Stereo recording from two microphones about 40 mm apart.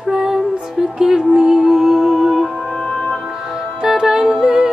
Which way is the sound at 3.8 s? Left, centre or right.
Centre.